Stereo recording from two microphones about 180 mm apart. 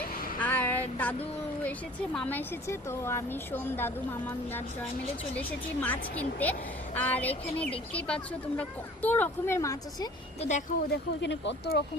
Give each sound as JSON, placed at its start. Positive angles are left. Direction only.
{"t": 0.3, "sound": "a sound", "side_deg": 10}
{"t": 2.1, "sound": "a woman's voice", "side_deg": 10}
{"t": 10.4, "sound": "speech", "side_deg": 40}
{"t": 10.9, "sound": "speech", "side_deg": 80}